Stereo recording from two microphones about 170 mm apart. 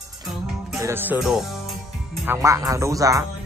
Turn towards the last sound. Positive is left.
turn(degrees=-20)  # may be behind; listen again after turning